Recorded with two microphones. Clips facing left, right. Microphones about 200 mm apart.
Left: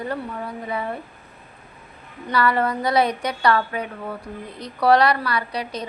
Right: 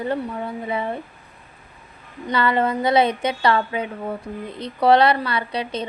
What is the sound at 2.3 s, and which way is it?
Speech, 25° right (ahead or behind).